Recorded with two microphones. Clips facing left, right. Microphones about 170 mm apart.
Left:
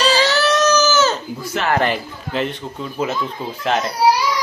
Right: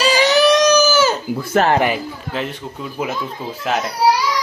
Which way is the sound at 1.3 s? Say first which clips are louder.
Right 7 dB; 55° right (ahead or behind).